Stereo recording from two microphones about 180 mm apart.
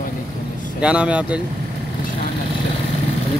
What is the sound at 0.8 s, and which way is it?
Speech, 5° right (ahead or behind).